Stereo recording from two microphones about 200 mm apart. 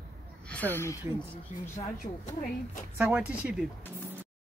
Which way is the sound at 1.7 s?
35° left (ahead or behind).